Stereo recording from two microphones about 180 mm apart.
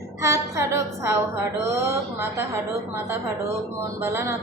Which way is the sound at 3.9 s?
15° right (ahead or behind).